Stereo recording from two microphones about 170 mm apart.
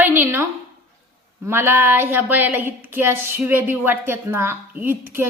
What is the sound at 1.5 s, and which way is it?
A woman's voice, 15° right (ahead or behind).